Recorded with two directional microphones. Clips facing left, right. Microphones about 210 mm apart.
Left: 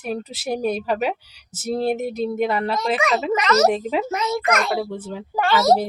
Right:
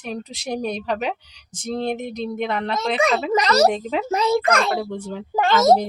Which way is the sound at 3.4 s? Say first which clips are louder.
Right 1 dB; 35° right (ahead or behind).